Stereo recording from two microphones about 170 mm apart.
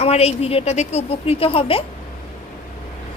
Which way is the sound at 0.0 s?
35° left (ahead or behind).